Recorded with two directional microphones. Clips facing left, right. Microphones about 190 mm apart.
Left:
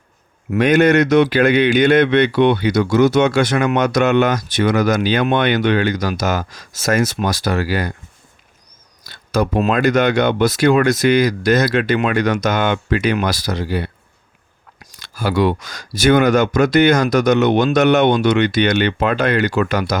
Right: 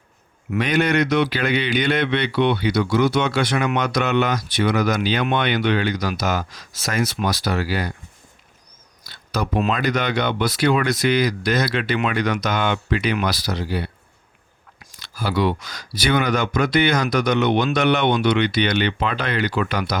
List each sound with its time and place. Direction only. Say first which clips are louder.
0.5 s a man's voice: left 7 dB; 45° left (ahead or behind)
9.0 s a man's voice: left 7 dB; 50° left (ahead or behind)
15.1 s a man's voice: left 4 dB; 50° left (ahead or behind)